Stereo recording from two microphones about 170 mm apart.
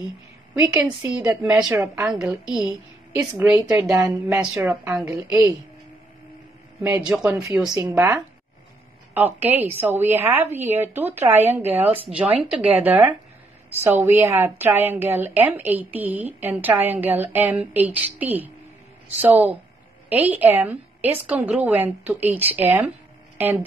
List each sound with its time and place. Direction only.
0.7 s a woman's voice: 5° right (ahead or behind)
3.2 s a woman's voice: 15° right (ahead or behind)
6.8 s a woman's voice: 10° right (ahead or behind)
7.3 s a woman's voice: 20° right (ahead or behind)